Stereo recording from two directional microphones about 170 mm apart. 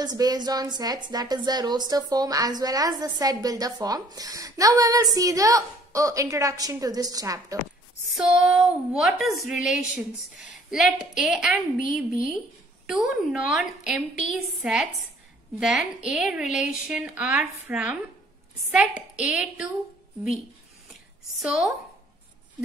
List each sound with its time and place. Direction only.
0.0 s a woman's voice: 25° right (ahead or behind)
8.1 s a woman's voice: 5° right (ahead or behind)
21.4 s a woman's voice: 5° right (ahead or behind)